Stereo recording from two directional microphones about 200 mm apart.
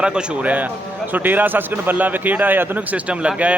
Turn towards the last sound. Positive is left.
turn(degrees=-5)  # may be behind; listen again after turning